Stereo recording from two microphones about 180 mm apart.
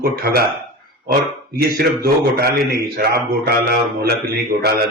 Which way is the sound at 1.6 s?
60° right (ahead or behind).